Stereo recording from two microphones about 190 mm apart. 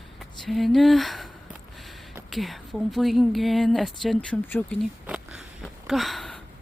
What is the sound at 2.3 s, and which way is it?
A woman's voice, centre (ahead or behind).